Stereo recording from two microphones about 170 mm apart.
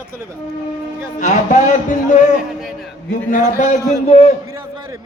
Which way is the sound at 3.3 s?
50° left (ahead or behind).